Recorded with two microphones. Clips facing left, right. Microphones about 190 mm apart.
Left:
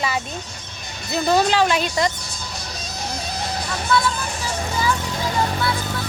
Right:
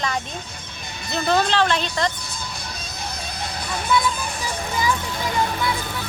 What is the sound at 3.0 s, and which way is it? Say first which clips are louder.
Music: left 4 dB; 55° right (ahead or behind).